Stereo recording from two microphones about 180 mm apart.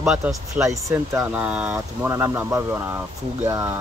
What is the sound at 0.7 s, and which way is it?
Speech, 15° right (ahead or behind).